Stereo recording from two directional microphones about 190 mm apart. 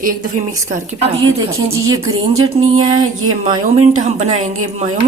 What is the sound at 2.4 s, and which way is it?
Music, 20° right (ahead or behind).